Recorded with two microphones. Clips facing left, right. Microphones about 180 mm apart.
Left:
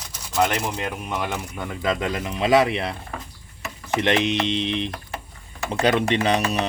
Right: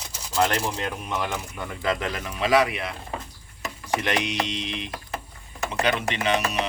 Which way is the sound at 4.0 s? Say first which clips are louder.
Left 8 dB; 25° left (ahead or behind).